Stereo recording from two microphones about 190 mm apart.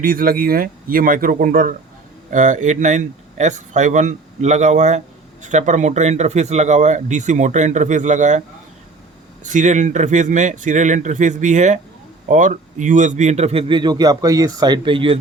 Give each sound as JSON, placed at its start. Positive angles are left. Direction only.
{"t": 0.0, "sound": "speech", "side_deg": -50}